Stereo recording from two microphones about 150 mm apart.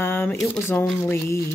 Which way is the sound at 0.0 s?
15° left (ahead or behind).